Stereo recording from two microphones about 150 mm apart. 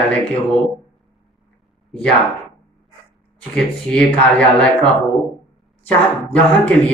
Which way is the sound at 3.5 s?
5° left (ahead or behind).